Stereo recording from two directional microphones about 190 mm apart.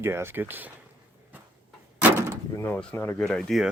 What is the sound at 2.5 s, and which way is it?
Speech, 10° left (ahead or behind).